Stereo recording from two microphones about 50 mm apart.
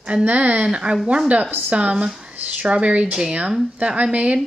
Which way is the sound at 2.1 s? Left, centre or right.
Centre.